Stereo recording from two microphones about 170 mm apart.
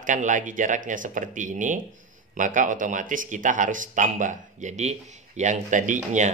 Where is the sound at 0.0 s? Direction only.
50° right (ahead or behind).